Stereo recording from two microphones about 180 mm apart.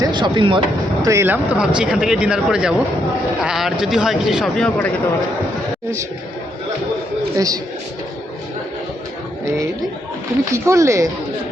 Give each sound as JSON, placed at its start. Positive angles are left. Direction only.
{"t": 0.0, "sound": "speech", "side_deg": -25}
{"t": 1.0, "sound": "speech", "side_deg": -15}
{"t": 7.3, "sound": "speech", "side_deg": -20}
{"t": 10.5, "sound": "speech", "side_deg": -15}